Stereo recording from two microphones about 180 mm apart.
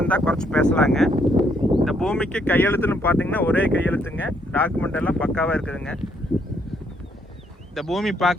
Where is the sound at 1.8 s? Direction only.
Centre (ahead or behind).